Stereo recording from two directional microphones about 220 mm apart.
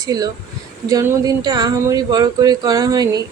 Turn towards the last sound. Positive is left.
turn(degrees=-15)  # may be behind; listen again after turning